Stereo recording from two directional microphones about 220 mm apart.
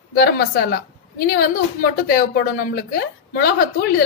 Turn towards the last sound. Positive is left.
turn(degrees=45)  # may be behind; listen again after turning